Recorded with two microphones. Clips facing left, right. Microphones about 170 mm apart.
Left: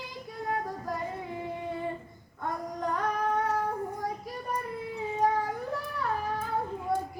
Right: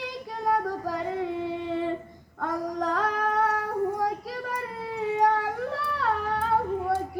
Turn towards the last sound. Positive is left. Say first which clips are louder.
# right 5 dB
turn(degrees=-75)  # may be behind; listen again after turning